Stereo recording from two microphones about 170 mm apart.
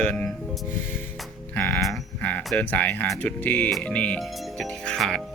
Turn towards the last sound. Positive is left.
turn(degrees=5)  # may be behind; listen again after turning